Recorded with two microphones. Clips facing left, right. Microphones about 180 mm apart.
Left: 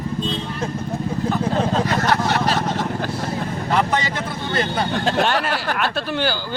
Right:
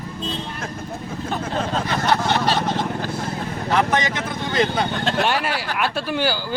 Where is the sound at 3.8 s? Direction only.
15° right (ahead or behind).